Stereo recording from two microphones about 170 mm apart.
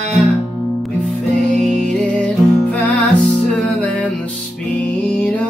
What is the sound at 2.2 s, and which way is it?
Music, 10° left (ahead or behind).